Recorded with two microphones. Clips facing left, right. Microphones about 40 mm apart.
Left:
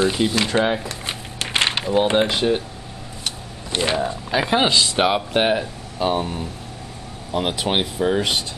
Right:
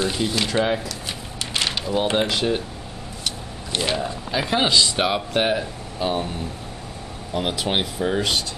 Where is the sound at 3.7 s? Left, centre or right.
Centre.